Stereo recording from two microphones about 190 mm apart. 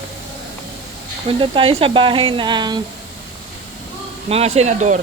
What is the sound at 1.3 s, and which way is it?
Speech, 25° right (ahead or behind).